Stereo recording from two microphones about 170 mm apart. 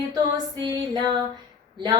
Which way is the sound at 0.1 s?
25° right (ahead or behind).